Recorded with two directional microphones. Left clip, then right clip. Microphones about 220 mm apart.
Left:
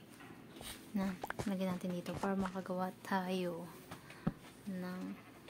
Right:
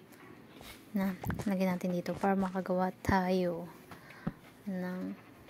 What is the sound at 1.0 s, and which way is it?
Speech, centre (ahead or behind).